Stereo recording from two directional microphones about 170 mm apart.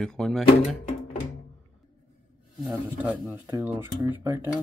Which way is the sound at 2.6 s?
10° right (ahead or behind).